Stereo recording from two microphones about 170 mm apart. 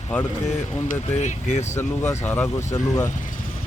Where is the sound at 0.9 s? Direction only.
45° left (ahead or behind).